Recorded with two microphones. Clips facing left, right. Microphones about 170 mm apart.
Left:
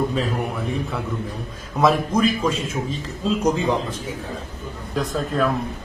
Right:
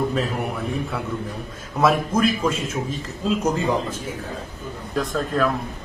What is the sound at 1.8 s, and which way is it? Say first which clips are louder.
Speech: left 1 dB; 5° right (ahead or behind).